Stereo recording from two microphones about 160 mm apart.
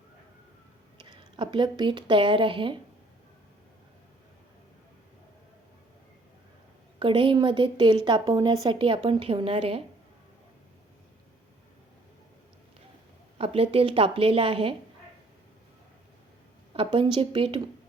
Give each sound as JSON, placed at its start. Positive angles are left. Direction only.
{"t": 1.0, "sound": "speech", "side_deg": -30}
{"t": 7.0, "sound": "a woman's voice", "side_deg": -30}
{"t": 13.4, "sound": "a woman's voice", "side_deg": -35}
{"t": 16.7, "sound": "a woman's voice", "side_deg": -30}